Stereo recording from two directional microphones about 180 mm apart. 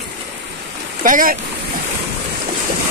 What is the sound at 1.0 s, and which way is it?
Speech, 50° right (ahead or behind).